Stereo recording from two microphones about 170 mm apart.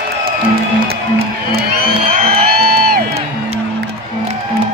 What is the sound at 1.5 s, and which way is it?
Music, 65° right (ahead or behind).